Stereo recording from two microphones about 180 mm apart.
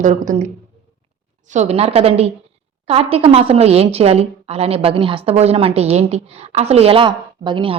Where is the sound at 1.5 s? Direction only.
35° right (ahead or behind).